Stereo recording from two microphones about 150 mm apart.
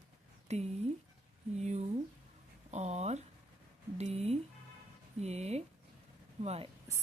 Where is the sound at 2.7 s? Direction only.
50° right (ahead or behind).